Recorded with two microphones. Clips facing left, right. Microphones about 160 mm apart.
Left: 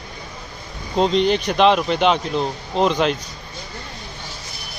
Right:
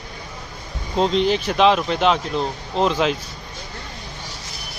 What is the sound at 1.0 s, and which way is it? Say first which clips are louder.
Speech: left 1 dB; centre (ahead or behind).